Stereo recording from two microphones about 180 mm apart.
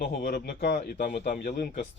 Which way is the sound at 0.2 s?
60° left (ahead or behind).